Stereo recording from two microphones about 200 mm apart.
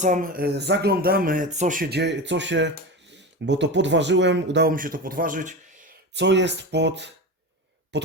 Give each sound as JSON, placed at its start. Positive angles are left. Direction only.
{"t": 0.0, "sound": "speech", "side_deg": -40}
{"t": 4.7, "sound": "speech", "side_deg": -45}
{"t": 6.1, "sound": "speech", "side_deg": -60}
{"t": 7.9, "sound": "a sound", "side_deg": -60}